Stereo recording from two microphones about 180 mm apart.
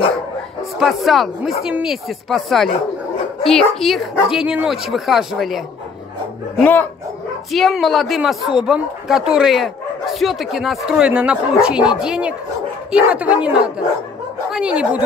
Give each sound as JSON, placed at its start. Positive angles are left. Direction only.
{"t": 0.7, "sound": "speech", "side_deg": 0}
{"t": 6.6, "sound": "speech", "side_deg": 10}